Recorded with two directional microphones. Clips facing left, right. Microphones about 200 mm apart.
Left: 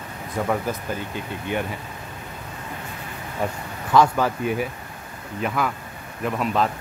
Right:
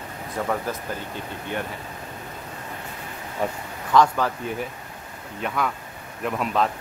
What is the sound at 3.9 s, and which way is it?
Speech, 10° left (ahead or behind).